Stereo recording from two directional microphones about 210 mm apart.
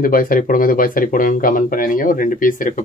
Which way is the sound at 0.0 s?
40° left (ahead or behind).